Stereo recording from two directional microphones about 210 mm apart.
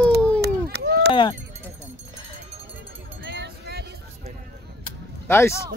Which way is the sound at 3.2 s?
55° right (ahead or behind).